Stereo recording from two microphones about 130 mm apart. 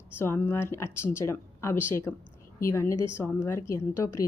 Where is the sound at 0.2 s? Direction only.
15° left (ahead or behind).